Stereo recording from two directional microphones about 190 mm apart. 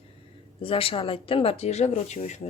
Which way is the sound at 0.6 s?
30° left (ahead or behind).